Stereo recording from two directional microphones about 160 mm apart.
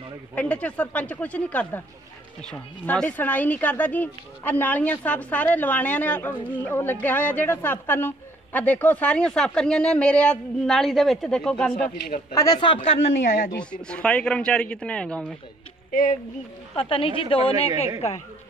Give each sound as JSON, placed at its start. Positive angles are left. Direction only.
{"t": 0.4, "sound": "a woman's voice", "side_deg": 10}
{"t": 2.9, "sound": "a woman's voice", "side_deg": 10}
{"t": 12.3, "sound": "a woman's voice", "side_deg": 25}
{"t": 13.6, "sound": "a woman's voice", "side_deg": 5}
{"t": 15.9, "sound": "speech", "side_deg": 55}
{"t": 16.7, "sound": "a woman's voice", "side_deg": 35}